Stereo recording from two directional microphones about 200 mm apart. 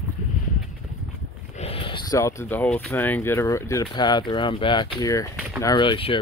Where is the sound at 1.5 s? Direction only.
30° left (ahead or behind).